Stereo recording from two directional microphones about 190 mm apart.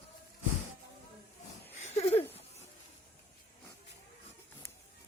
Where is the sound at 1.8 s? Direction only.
30° left (ahead or behind).